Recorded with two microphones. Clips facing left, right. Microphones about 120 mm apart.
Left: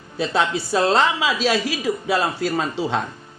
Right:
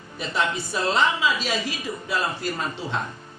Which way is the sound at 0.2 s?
90° left.